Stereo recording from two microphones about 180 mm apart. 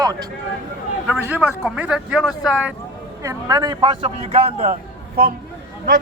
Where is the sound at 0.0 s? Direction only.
20° right (ahead or behind).